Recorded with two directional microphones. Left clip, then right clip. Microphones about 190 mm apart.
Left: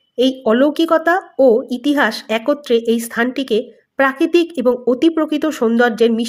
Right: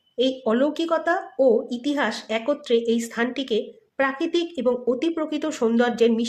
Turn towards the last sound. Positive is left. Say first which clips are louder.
# left 6 dB
turn(degrees=30)  # may be behind; listen again after turning